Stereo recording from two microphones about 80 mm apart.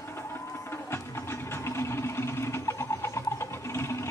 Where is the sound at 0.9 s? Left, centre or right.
Left.